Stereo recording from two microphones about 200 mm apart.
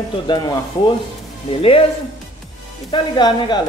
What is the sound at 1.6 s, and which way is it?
Speech, 30° left (ahead or behind).